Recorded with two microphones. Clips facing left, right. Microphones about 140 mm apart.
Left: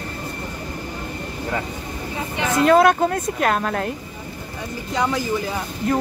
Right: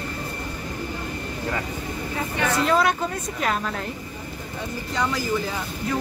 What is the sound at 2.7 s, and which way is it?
Speech, 55° left (ahead or behind).